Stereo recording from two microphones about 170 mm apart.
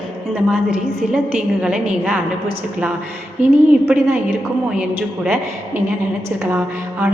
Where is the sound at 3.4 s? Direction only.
45° right (ahead or behind).